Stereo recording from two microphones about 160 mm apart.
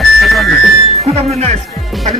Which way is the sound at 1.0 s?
40° right (ahead or behind).